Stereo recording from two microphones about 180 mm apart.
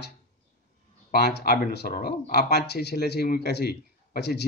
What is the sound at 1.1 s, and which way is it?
Speech, 60° left (ahead or behind).